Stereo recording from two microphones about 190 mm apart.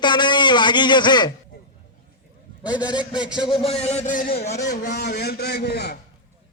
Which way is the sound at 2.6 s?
5° right (ahead or behind).